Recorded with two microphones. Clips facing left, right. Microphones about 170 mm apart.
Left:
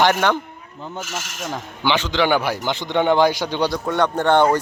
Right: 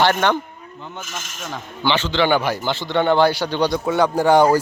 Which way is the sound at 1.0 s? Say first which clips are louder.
Left 4 dB; 80° left.